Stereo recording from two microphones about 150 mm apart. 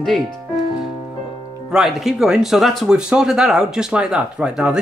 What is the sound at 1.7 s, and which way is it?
Speech, 5° right (ahead or behind).